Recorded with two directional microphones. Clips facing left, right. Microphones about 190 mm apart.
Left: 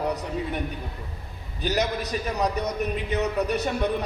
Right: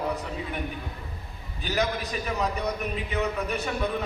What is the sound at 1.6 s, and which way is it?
Speech, 40° left (ahead or behind).